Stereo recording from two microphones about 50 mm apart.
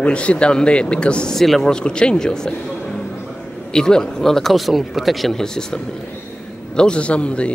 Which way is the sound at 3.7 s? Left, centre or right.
Centre.